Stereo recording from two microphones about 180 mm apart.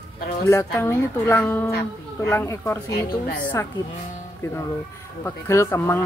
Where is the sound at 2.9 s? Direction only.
45° left (ahead or behind).